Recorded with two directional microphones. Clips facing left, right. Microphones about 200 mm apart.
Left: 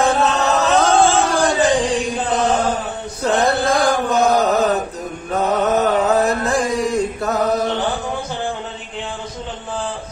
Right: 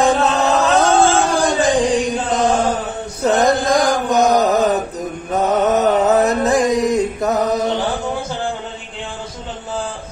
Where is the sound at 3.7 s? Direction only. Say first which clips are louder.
Right 1 dB; 40° right (ahead or behind).